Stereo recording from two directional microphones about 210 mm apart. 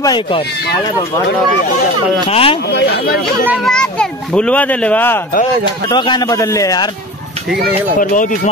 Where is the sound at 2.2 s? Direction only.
25° left (ahead or behind).